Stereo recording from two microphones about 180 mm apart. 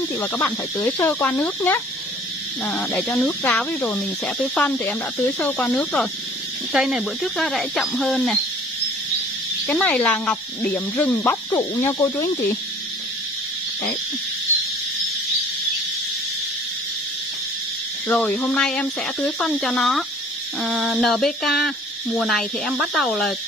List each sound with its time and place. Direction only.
0.2 s speech: 10° left (ahead or behind)
6.7 s speech: 5° right (ahead or behind)
9.7 s speech: 5° left (ahead or behind)
11.5 s speech: 20° left (ahead or behind)
18.0 s speech: 10° left (ahead or behind)